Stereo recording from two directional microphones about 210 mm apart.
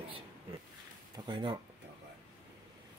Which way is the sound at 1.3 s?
20° right (ahead or behind).